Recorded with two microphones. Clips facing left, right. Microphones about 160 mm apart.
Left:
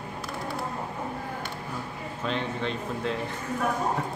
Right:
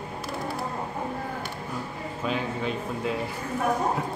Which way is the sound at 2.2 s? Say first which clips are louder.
Right 1 dB; 5° right (ahead or behind).